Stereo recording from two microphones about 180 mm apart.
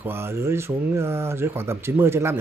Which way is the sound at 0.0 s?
15° right (ahead or behind).